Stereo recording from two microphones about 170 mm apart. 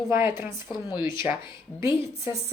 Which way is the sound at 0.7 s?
25° left (ahead or behind).